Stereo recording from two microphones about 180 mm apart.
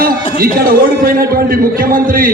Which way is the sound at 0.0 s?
55° right (ahead or behind).